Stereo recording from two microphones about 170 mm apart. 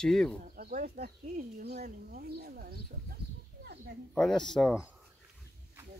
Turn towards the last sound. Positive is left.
turn(degrees=5)  # may be behind; listen again after turning